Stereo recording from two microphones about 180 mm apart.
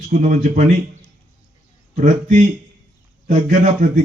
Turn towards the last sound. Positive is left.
turn(degrees=-45)  # may be behind; listen again after turning